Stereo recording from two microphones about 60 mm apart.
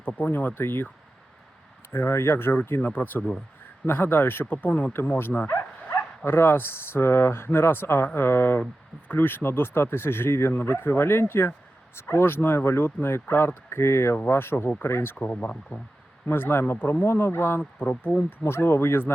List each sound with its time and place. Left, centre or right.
0.0 s speech: left
1.9 s speech: left
2.8 s speech: left
4.5 s speech: left
4.9 s speech: left
15.1 s speech: left
16.3 s speech: left
17.6 s speech: left